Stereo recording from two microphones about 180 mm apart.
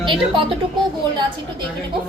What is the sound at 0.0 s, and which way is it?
Speech, 30° right (ahead or behind).